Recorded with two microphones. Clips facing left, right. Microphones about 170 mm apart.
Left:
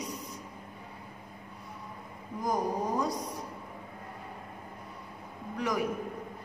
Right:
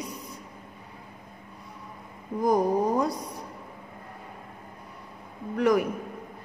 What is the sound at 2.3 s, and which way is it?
Speech, 60° right (ahead or behind).